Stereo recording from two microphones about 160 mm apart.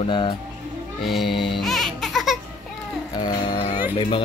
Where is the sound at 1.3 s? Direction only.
30° left (ahead or behind).